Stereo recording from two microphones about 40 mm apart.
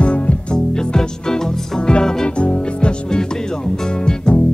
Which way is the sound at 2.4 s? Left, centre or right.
Left.